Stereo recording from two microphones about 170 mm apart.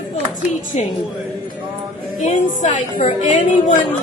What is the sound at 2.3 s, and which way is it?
A woman's voice, 45° left (ahead or behind).